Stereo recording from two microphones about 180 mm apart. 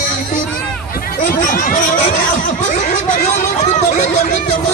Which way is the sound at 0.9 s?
55° left (ahead or behind).